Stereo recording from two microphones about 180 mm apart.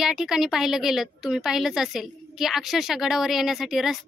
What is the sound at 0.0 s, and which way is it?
A woman's voice, 5° right (ahead or behind).